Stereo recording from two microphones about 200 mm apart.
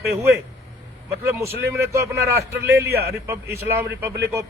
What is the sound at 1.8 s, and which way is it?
Speech, 15° right (ahead or behind).